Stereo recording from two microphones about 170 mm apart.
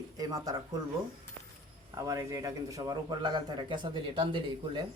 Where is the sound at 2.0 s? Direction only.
20° right (ahead or behind).